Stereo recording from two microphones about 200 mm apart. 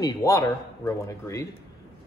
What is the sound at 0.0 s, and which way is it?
A man's voice, 15° left (ahead or behind).